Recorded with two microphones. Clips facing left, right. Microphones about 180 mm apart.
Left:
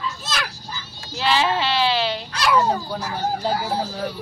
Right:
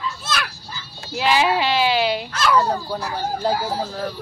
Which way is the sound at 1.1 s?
15° right (ahead or behind).